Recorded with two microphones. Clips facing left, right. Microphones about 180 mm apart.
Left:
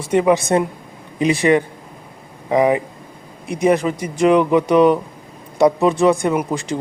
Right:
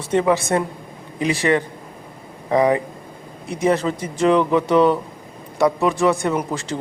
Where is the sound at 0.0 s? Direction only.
15° left (ahead or behind).